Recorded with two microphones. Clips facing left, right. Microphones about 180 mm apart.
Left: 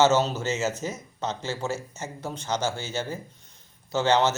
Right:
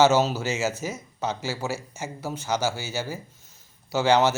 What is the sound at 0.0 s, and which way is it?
Speech, 10° right (ahead or behind).